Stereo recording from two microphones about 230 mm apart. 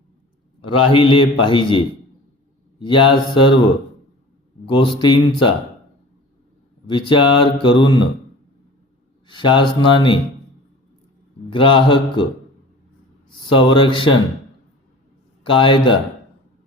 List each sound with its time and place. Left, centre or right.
0.7 s speech: left
4.7 s speech: left
6.8 s speech: left
9.2 s speech: left
11.5 s speech: left
13.4 s speech: left
15.4 s speech: left